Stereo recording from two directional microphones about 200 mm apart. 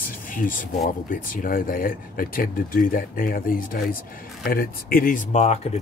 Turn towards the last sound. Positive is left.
turn(degrees=35)  # may be behind; listen again after turning